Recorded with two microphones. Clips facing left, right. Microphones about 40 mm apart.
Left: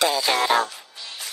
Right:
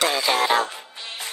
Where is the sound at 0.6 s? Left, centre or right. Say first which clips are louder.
Right 3 dB; right.